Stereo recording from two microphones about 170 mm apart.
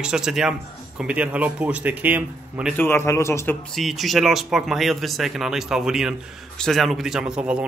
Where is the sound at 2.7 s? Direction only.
15° left (ahead or behind).